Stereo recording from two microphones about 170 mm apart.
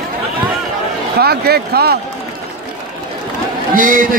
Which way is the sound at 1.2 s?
65° right (ahead or behind).